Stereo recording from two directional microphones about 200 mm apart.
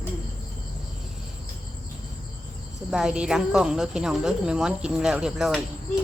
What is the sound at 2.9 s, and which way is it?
A woman's voice, centre (ahead or behind).